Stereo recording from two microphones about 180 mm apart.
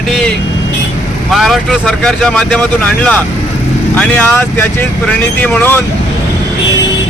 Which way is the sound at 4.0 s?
5° left (ahead or behind).